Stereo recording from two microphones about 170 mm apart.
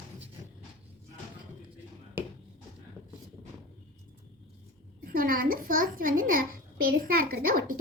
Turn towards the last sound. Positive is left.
turn(degrees=-55)  # may be behind; listen again after turning